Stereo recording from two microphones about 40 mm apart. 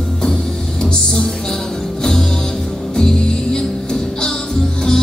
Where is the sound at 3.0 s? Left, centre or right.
Left.